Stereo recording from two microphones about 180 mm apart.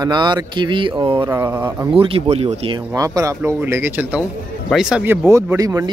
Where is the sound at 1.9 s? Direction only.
30° right (ahead or behind).